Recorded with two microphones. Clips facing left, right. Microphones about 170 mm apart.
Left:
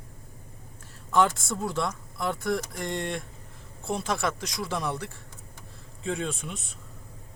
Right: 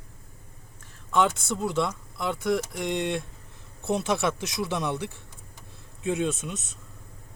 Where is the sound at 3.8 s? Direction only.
25° right (ahead or behind).